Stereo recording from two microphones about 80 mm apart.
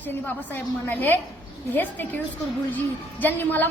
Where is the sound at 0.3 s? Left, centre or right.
Left.